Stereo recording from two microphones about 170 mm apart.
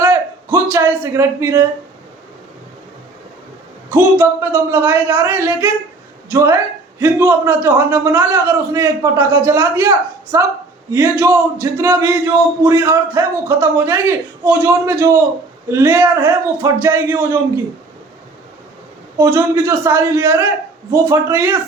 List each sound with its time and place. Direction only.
0.0 s a man's voice: 15° right (ahead or behind)
3.8 s a man's voice: 15° right (ahead or behind)
19.1 s a man's voice: 15° right (ahead or behind)